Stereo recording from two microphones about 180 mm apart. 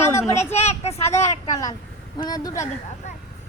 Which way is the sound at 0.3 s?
35° left (ahead or behind).